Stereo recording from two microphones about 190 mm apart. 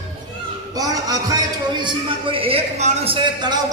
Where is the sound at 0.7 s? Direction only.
20° right (ahead or behind).